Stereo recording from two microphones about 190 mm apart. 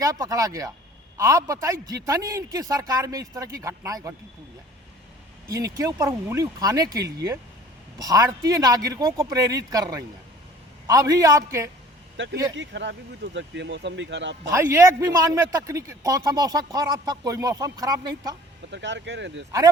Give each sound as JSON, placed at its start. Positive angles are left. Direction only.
{"t": 0.0, "sound": "speech", "side_deg": -20}
{"t": 5.5, "sound": "a man's voice", "side_deg": -15}
{"t": 12.1, "sound": "speech", "side_deg": -70}
{"t": 14.5, "sound": "a man's voice", "side_deg": -15}
{"t": 18.7, "sound": "speech", "side_deg": -65}